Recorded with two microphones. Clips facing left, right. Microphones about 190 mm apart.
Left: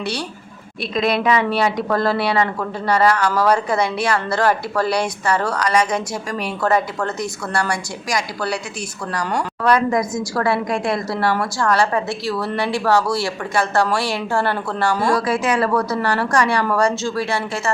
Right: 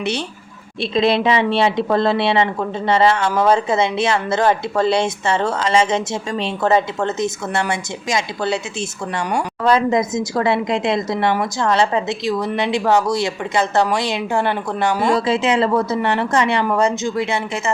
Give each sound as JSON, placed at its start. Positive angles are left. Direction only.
{"t": 0.0, "sound": "a woman's voice", "side_deg": -20}